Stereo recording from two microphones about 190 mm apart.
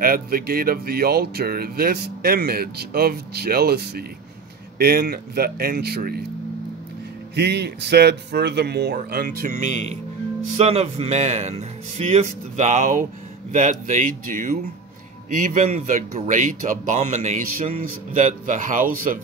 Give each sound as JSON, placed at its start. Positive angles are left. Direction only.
{"t": 0.0, "sound": "a man's voice", "side_deg": -50}
{"t": 7.3, "sound": "a man's voice", "side_deg": -60}